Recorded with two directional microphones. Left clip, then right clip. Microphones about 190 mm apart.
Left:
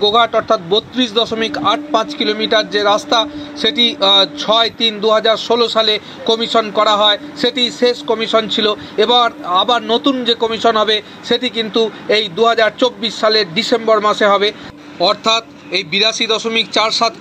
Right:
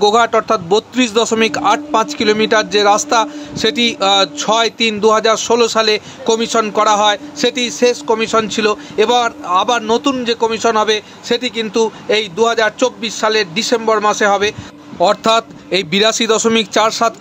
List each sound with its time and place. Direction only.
0.0 s speech: 45° right (ahead or behind)
15.0 s a man's voice: 55° right (ahead or behind)